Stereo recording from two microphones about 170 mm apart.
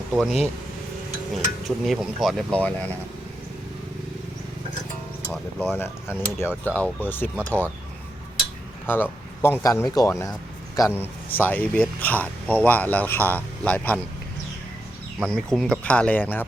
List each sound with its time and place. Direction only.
0.1 s speech: centre (ahead or behind)
5.3 s speech: centre (ahead or behind)
5.7 s speech: 15° left (ahead or behind)
8.9 s a man's voice: 10° left (ahead or behind)
15.2 s speech: 5° left (ahead or behind)